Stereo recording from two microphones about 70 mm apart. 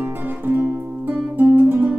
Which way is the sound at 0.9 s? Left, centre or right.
Right.